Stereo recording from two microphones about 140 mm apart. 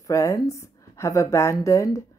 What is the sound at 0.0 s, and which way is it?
A woman's voice, 20° left (ahead or behind).